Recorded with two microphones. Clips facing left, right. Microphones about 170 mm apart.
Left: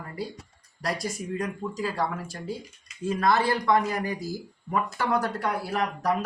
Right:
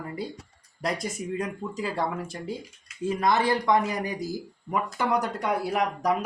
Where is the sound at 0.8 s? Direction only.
20° right (ahead or behind).